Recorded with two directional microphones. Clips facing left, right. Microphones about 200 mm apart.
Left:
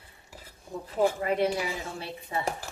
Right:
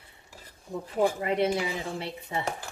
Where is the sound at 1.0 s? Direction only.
25° right (ahead or behind).